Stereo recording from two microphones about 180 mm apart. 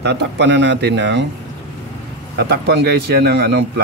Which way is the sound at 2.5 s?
65° right (ahead or behind).